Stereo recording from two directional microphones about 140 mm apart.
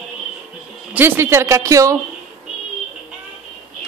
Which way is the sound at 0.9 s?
15° right (ahead or behind).